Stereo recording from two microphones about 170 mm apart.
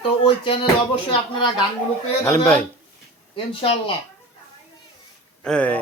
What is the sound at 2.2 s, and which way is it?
Speech, 15° left (ahead or behind).